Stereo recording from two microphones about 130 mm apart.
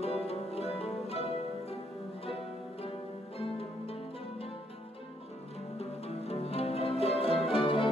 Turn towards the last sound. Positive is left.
turn(degrees=40)  # may be behind; listen again after turning